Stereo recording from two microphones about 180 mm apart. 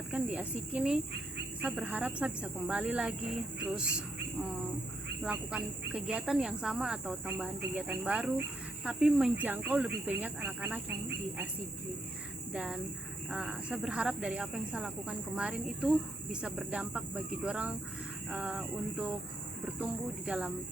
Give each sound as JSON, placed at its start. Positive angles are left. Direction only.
{"t": 0.1, "sound": "speech", "side_deg": -5}
{"t": 5.2, "sound": "speech", "side_deg": -5}
{"t": 12.5, "sound": "speech", "side_deg": -5}